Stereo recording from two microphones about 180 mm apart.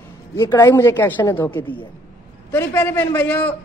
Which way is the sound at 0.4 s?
15° left (ahead or behind).